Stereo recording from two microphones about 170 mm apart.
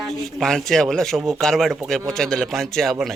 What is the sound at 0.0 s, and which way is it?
Speech, centre (ahead or behind).